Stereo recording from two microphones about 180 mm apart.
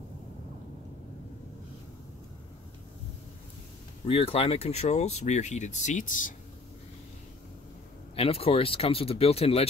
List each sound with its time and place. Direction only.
4.1 s speech: 35° left (ahead or behind)
8.2 s speech: 30° left (ahead or behind)